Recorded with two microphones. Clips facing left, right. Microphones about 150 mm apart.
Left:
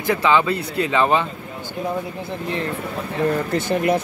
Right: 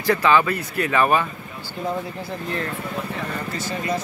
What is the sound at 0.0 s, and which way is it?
Speech, 20° left (ahead or behind).